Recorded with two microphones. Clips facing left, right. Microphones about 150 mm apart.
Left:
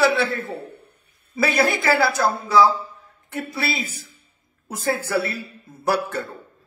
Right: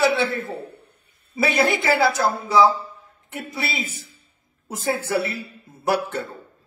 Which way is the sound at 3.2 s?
15° right (ahead or behind).